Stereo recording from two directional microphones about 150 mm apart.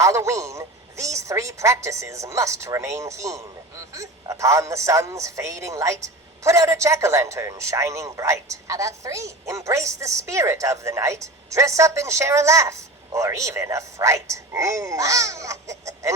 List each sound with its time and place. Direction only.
0.0 s speech: 20° right (ahead or behind)